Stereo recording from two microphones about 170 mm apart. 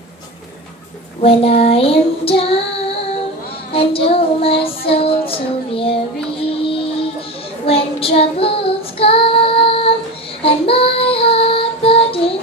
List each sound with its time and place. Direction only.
1.2 s child singing: 35° left (ahead or behind)
3.7 s child singing: 35° left (ahead or behind)
6.4 s music: 35° left (ahead or behind)
7.6 s child singing: 35° left (ahead or behind)